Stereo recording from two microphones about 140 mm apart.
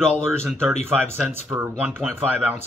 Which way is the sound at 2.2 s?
10° right (ahead or behind).